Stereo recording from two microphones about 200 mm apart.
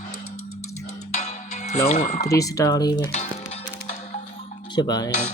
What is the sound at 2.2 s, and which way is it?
Speech, 15° left (ahead or behind).